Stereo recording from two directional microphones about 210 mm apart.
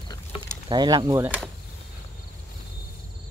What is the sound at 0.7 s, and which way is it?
Speech, 20° right (ahead or behind).